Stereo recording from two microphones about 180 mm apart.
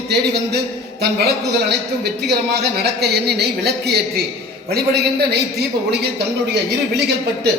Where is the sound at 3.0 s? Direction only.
65° right (ahead or behind).